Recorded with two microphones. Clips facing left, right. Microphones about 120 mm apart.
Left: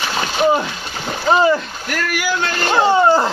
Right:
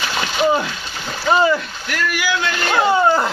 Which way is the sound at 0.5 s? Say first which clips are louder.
Left 2 dB; 20° left (ahead or behind).